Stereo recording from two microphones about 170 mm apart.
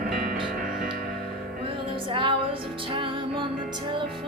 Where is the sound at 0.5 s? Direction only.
55° right (ahead or behind).